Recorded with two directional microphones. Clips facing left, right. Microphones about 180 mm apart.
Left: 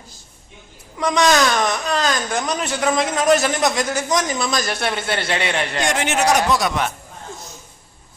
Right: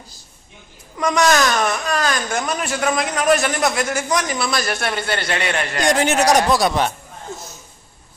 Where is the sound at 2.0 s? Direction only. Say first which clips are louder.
Even; 20° left (ahead or behind).